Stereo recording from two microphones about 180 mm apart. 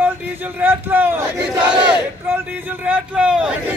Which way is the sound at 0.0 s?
10° right (ahead or behind).